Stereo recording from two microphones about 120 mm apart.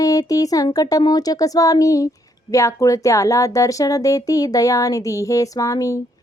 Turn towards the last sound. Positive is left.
turn(degrees=30)  # may be behind; listen again after turning